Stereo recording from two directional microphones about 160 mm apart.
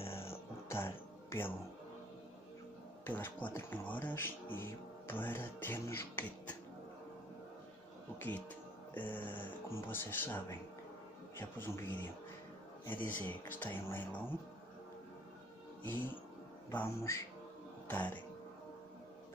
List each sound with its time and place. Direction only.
0.0 s music: 35° left (ahead or behind)
0.7 s music: 15° left (ahead or behind)
3.1 s speech: 10° left (ahead or behind)
8.2 s speech: 10° left (ahead or behind)
13.0 s speech: 10° left (ahead or behind)
16.7 s speech: 15° left (ahead or behind)